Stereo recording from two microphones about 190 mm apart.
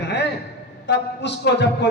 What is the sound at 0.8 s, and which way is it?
A man's voice, 65° left (ahead or behind).